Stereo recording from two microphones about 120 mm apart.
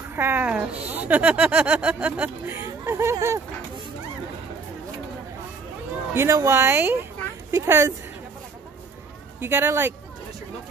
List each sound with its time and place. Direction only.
0.1 s speech: 15° right (ahead or behind)
6.1 s speech: 25° right (ahead or behind)
9.4 s speech: 20° right (ahead or behind)